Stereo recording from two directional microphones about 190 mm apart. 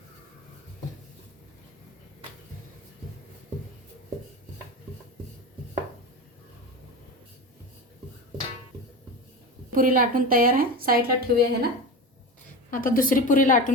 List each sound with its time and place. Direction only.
9.7 s a woman's voice: 45° right (ahead or behind)
12.7 s a woman's voice: 45° left (ahead or behind)